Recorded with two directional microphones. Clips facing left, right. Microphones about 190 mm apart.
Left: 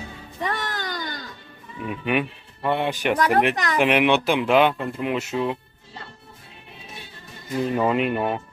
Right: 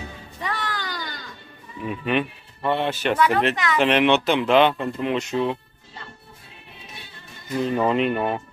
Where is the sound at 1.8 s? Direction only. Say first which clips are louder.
Even; 10° left (ahead or behind).